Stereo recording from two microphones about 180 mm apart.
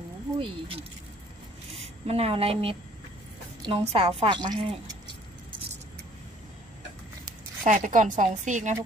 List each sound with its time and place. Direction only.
1.8 s a woman's voice: 35° right (ahead or behind)
7.6 s a woman's voice: 45° right (ahead or behind)